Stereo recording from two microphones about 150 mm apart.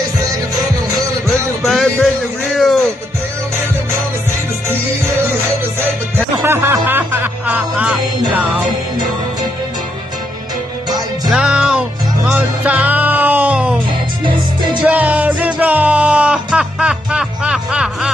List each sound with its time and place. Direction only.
1.6 s speech: centre (ahead or behind)
6.3 s music: 15° right (ahead or behind)
11.2 s music: 5° right (ahead or behind)
13.8 s music: 30° right (ahead or behind)
14.9 s music: 10° right (ahead or behind)